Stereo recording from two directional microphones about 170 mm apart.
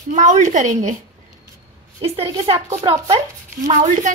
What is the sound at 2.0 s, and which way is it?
A woman's voice, 35° right (ahead or behind).